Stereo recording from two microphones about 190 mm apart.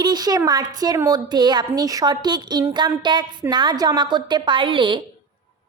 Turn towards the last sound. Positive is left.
turn(degrees=-25)  # may be behind; listen again after turning